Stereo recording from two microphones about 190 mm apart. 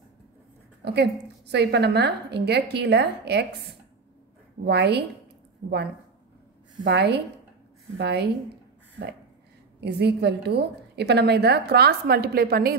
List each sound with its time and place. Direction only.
0.8 s a woman's voice: 55° right (ahead or behind)
4.6 s a woman's voice: 60° right (ahead or behind)
6.8 s a woman's voice: 65° right (ahead or behind)
9.8 s a woman's voice: 60° right (ahead or behind)